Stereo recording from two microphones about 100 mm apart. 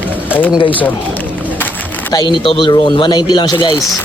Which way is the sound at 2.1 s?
50° left (ahead or behind).